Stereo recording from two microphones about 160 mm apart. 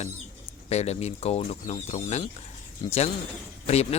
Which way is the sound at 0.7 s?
40° left (ahead or behind).